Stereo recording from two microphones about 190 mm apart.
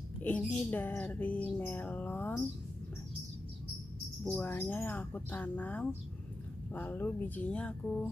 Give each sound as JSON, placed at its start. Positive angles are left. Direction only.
{"t": 0.2, "sound": "speech", "side_deg": 10}
{"t": 4.2, "sound": "speech", "side_deg": 10}